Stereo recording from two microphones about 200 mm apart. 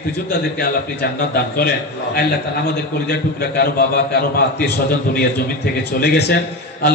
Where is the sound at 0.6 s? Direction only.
50° left (ahead or behind).